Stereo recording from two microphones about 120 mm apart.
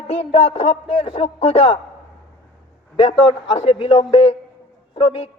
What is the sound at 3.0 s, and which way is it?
A man's voice, 50° left (ahead or behind).